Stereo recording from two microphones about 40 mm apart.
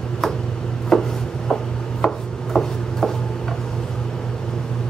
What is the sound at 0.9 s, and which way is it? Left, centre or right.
Chopping, centre.